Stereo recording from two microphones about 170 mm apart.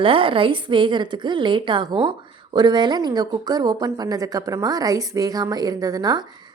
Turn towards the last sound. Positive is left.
turn(degrees=-25)  # may be behind; listen again after turning